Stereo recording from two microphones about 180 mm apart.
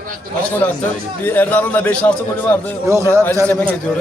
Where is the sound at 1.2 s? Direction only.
10° left (ahead or behind).